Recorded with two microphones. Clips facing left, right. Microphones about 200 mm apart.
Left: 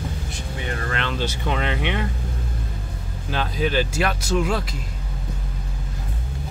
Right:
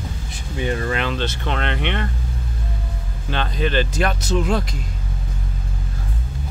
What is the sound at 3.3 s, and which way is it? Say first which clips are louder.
Speech: right 1 dB; 5° left (ahead or behind).